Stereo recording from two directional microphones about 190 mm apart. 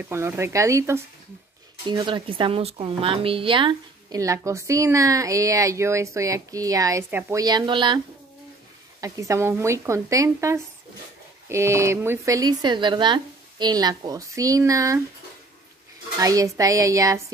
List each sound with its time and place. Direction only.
0.0 s speech: 15° right (ahead or behind)
9.0 s speech: 15° right (ahead or behind)
16.2 s speech: 20° right (ahead or behind)